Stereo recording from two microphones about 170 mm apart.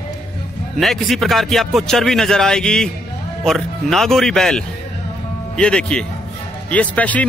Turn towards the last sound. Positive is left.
turn(degrees=10)  # may be behind; listen again after turning